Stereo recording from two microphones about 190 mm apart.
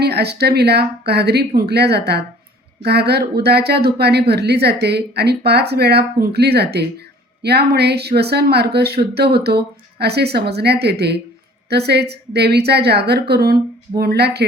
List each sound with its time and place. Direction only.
0.0 s speech: 60° right (ahead or behind)